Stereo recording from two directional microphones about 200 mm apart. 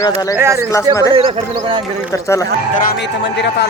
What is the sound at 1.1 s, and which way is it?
Speech, 25° right (ahead or behind).